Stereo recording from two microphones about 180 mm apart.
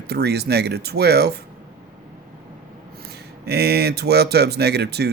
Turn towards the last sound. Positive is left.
turn(degrees=-65)  # may be behind; listen again after turning